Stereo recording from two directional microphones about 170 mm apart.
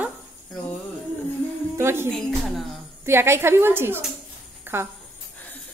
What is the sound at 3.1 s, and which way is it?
A woman's voice, 15° right (ahead or behind).